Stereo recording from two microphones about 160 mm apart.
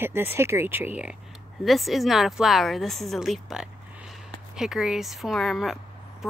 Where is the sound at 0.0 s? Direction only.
15° right (ahead or behind).